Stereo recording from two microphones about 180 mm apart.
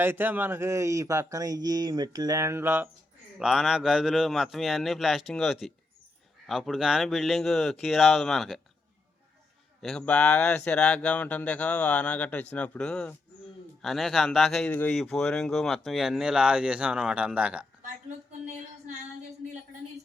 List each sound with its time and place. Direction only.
0.0 s speech: 10° right (ahead or behind)
9.8 s speech: 5° left (ahead or behind)